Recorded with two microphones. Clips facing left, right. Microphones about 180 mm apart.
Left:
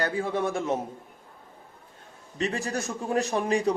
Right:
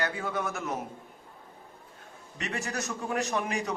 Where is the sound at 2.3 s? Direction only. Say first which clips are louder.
Left 5 dB; 30° left (ahead or behind).